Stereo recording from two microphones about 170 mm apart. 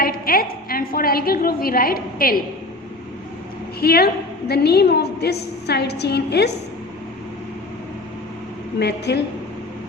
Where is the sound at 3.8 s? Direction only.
65° left (ahead or behind).